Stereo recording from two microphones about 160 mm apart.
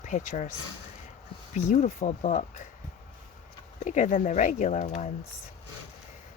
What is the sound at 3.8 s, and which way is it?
Speech, 50° left (ahead or behind).